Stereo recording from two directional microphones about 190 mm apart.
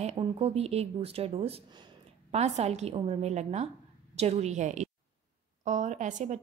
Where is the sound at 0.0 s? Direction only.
35° right (ahead or behind).